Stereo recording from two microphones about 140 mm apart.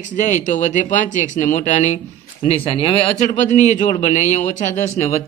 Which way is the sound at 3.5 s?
55° left (ahead or behind).